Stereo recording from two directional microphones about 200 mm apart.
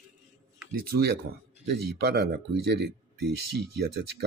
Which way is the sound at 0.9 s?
50° right (ahead or behind).